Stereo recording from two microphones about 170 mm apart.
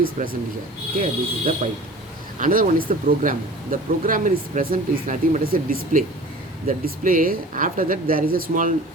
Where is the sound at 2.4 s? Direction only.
55° right (ahead or behind).